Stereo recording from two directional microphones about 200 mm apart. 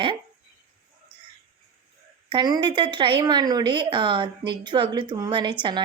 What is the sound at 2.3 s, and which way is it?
Speech, 25° right (ahead or behind).